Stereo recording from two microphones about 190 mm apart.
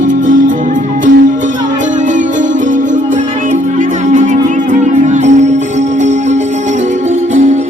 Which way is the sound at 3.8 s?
40° right (ahead or behind).